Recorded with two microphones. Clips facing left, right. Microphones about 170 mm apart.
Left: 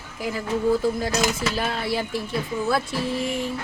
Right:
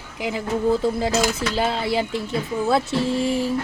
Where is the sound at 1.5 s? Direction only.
25° right (ahead or behind).